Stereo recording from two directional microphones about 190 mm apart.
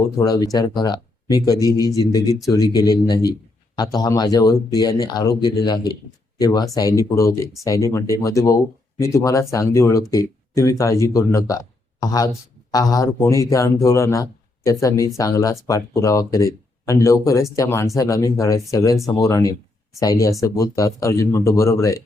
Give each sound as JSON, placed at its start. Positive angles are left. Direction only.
{"t": 0.2, "sound": "speech", "side_deg": 20}